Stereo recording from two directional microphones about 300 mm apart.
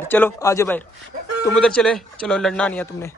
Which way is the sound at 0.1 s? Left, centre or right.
Centre.